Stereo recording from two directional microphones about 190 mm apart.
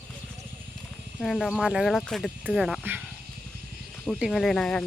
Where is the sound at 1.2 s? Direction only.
Centre (ahead or behind).